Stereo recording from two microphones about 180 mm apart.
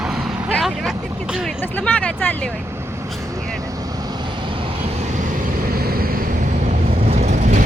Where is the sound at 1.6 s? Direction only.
10° left (ahead or behind).